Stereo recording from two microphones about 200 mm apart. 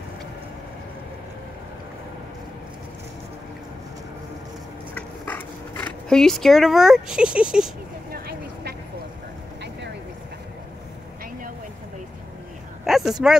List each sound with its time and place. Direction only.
4.9 s a sound: 10° left (ahead or behind)
8.1 s vehicle: 50° right (ahead or behind)
12.8 s speech: centre (ahead or behind)